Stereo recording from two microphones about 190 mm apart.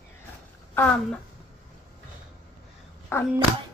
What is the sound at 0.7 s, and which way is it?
Speech, 10° left (ahead or behind).